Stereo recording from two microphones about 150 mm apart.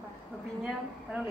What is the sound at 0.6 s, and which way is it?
Speech, 5° right (ahead or behind).